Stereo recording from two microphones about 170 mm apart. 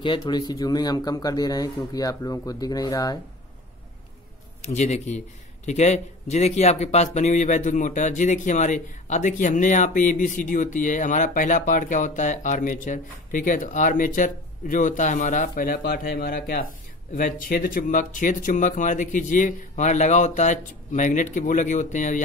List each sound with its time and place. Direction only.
0.0 s speech: 25° left (ahead or behind)
4.6 s a man's voice: 40° left (ahead or behind)